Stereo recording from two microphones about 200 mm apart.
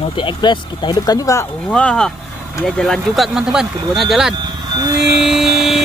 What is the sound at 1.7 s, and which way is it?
Speech, 5° left (ahead or behind).